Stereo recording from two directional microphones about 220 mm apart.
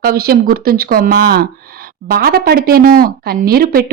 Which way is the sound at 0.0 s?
45° right (ahead or behind).